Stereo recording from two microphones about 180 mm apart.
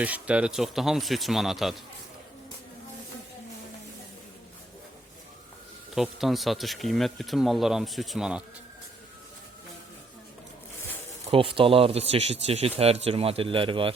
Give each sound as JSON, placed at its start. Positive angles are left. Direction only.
{"t": 0.0, "sound": "speech", "side_deg": -5}
{"t": 5.9, "sound": "speech", "side_deg": 0}
{"t": 11.3, "sound": "speech", "side_deg": -30}